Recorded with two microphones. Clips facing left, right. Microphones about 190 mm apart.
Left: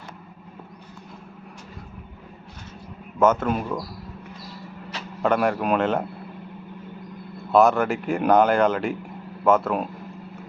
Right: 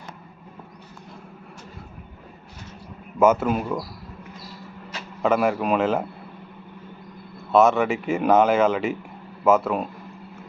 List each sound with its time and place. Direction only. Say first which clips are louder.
3.2 s speech: right 1 dB; 5° right (ahead or behind)
5.2 s speech: right 1 dB; 5° right (ahead or behind)
7.5 s speech: even; centre (ahead or behind)